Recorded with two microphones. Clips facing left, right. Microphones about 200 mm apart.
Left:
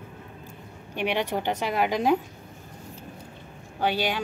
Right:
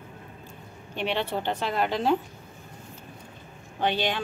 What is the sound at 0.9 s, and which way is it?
A woman's voice, 15° left (ahead or behind).